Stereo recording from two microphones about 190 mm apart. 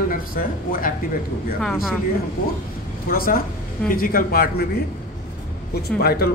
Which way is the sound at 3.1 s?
50° left (ahead or behind).